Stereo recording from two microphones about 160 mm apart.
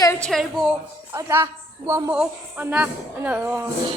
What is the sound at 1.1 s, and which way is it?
Speech, 20° right (ahead or behind).